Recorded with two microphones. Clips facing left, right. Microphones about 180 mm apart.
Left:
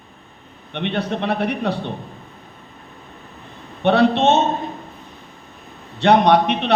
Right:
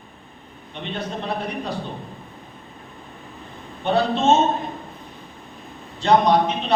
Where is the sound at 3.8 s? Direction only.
65° left (ahead or behind).